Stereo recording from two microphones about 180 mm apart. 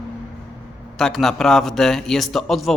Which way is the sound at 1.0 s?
Centre (ahead or behind).